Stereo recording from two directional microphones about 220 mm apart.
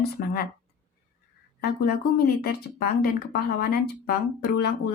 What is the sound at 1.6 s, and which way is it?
A woman's voice, 45° left (ahead or behind).